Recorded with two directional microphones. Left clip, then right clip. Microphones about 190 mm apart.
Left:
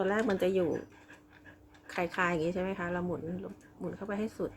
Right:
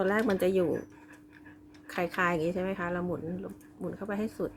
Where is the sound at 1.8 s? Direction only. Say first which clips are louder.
Right 2 dB; 15° right (ahead or behind).